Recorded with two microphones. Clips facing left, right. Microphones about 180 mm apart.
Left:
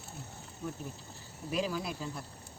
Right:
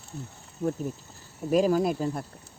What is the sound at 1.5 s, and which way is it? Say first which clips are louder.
Speech: right 12 dB; 45° right (ahead or behind).